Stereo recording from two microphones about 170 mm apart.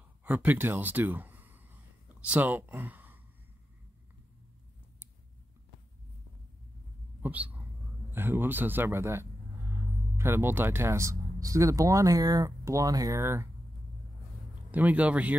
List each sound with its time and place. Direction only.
0.2 s speech: 10° right (ahead or behind)
7.2 s a sound: 10° right (ahead or behind)
8.1 s speech: 10° right (ahead or behind)
14.7 s speech: 10° right (ahead or behind)